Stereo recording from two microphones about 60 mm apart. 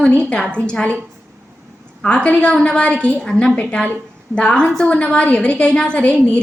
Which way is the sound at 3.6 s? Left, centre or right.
Left.